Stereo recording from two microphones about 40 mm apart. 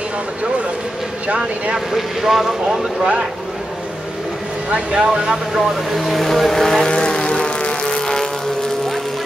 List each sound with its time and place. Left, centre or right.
1.9 s speech: centre
3.0 s speech: right
4.6 s speech: right
5.9 s speech: centre
6.9 s vehicle: left